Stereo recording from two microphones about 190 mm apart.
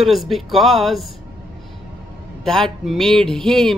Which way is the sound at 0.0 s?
Centre (ahead or behind).